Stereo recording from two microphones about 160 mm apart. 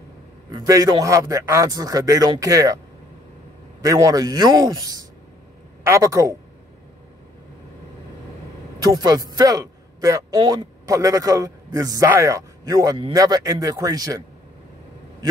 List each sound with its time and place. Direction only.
0.5 s a man's voice: 25° right (ahead or behind)
3.8 s a man's voice: 20° right (ahead or behind)
8.8 s a man's voice: 25° right (ahead or behind)